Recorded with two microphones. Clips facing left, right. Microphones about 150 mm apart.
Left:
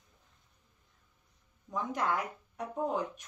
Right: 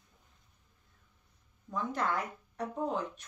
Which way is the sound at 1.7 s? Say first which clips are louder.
Even; 15° left (ahead or behind).